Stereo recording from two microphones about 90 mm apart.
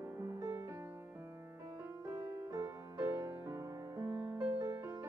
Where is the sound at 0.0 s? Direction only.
30° right (ahead or behind).